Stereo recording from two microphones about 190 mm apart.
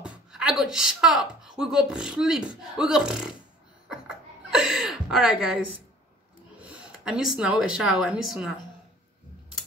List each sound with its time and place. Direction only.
0.0 s a woman's voice: 5° right (ahead or behind)
3.9 s chuckle: 5° right (ahead or behind)
6.6 s speech: 5° right (ahead or behind)